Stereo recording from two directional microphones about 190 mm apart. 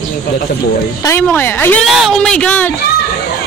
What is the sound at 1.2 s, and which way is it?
Speech, 10° left (ahead or behind).